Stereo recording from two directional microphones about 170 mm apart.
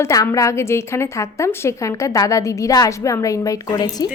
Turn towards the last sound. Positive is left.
turn(degrees=20)  # may be behind; listen again after turning